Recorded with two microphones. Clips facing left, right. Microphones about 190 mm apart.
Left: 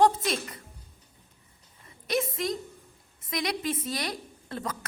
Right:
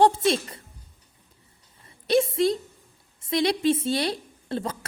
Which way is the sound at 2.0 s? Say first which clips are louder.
Right 8 dB; 30° right (ahead or behind).